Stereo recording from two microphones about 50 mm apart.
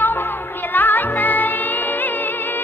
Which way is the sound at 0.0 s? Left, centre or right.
Left.